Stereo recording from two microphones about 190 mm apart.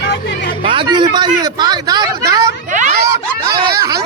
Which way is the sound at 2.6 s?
40° right (ahead or behind).